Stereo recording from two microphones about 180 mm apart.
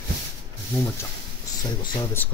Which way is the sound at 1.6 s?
25° left (ahead or behind).